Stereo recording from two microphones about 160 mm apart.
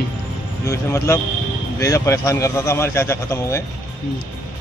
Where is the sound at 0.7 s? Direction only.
20° left (ahead or behind).